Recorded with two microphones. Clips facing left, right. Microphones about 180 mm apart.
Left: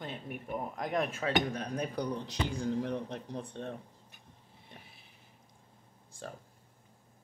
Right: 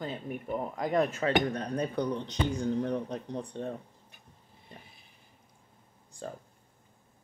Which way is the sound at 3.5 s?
10° right (ahead or behind).